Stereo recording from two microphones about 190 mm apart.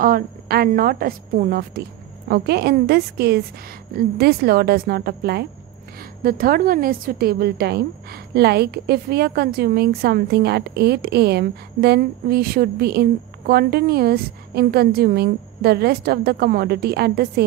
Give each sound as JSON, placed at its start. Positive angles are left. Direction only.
{"t": 0.0, "sound": "a woman's voice", "side_deg": -50}